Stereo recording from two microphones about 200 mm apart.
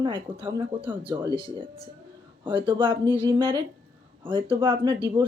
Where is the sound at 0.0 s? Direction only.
25° right (ahead or behind).